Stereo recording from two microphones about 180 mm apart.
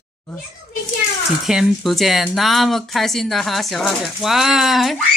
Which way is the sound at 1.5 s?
Centre (ahead or behind).